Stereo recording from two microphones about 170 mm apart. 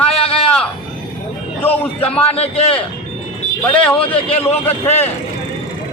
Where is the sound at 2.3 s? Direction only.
35° left (ahead or behind).